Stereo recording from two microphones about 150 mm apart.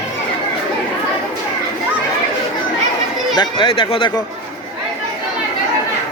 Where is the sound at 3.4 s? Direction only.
35° left (ahead or behind).